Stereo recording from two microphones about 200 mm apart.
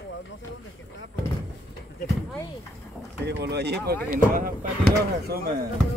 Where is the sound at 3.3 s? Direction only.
55° right (ahead or behind).